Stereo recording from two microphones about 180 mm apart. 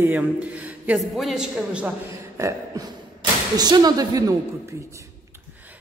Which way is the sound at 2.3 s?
15° right (ahead or behind).